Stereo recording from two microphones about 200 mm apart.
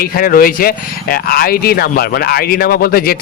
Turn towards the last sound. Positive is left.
turn(degrees=50)  # may be behind; listen again after turning